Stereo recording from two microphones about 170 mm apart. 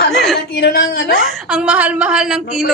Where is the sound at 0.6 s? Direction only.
70° left (ahead or behind).